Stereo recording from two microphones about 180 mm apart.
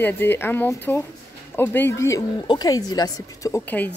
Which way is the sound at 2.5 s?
20° left (ahead or behind).